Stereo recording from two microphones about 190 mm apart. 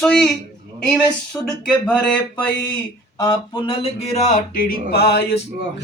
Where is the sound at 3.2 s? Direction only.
25° left (ahead or behind); by 5.3 s 55° left (ahead or behind).